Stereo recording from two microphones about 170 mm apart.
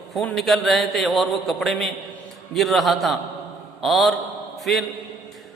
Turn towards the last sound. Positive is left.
turn(degrees=0)  # may be behind; listen again after turning